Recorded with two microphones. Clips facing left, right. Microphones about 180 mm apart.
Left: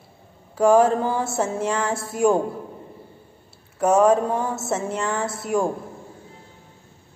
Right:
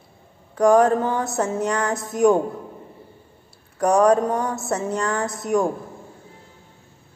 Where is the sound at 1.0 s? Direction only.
10° left (ahead or behind).